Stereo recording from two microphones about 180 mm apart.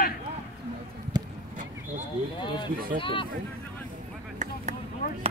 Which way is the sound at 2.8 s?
55° right (ahead or behind).